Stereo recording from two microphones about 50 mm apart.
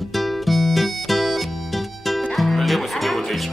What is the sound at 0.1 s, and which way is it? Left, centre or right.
Music, centre.